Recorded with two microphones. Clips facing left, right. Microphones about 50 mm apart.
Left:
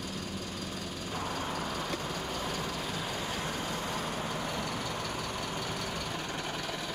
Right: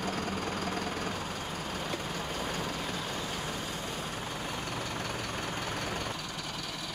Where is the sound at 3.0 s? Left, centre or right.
Left.